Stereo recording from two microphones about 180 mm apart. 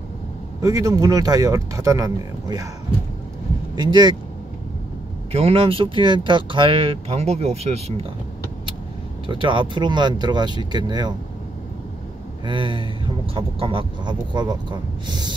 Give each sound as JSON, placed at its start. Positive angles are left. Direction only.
{"t": 0.6, "sound": "speech", "side_deg": -15}
{"t": 3.7, "sound": "speech", "side_deg": -25}
{"t": 5.3, "sound": "speech", "side_deg": -35}
{"t": 9.3, "sound": "speech", "side_deg": -25}
{"t": 12.4, "sound": "speech", "side_deg": -25}